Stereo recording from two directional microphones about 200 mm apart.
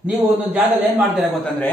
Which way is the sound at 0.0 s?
10° right (ahead or behind).